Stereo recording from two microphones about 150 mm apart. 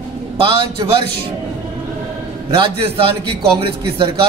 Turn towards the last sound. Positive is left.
turn(degrees=-35)  # may be behind; listen again after turning